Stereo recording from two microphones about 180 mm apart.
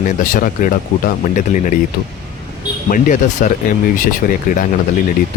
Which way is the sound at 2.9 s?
50° left (ahead or behind).